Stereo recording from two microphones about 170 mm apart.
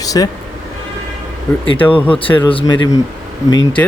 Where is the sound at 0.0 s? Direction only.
20° left (ahead or behind).